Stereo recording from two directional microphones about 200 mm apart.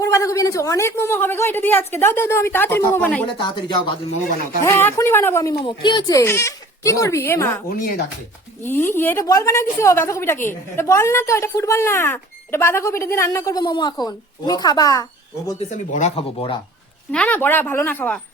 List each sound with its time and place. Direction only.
0.0 s a woman's voice: 15° left (ahead or behind)
3.2 s a woman's voice: 25° left (ahead or behind)
4.6 s a woman's voice: 10° left (ahead or behind)
7.7 s speech: 50° left (ahead or behind)
8.6 s a woman's voice: 10° left (ahead or behind)
15.7 s speech: 35° left (ahead or behind)
17.1 s a woman's voice: 5° left (ahead or behind)